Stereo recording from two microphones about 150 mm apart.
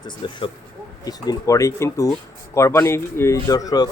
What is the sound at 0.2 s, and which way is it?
Speech, 35° left (ahead or behind).